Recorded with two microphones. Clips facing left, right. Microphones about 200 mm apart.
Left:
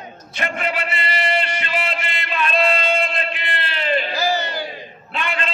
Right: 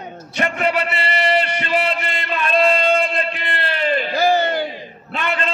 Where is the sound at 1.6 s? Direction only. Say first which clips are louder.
Right 5 dB; 40° right (ahead or behind).